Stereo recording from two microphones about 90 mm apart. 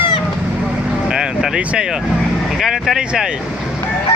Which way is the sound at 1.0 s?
10° right (ahead or behind).